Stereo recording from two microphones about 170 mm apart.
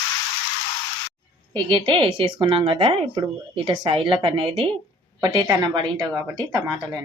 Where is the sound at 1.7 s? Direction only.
30° right (ahead or behind).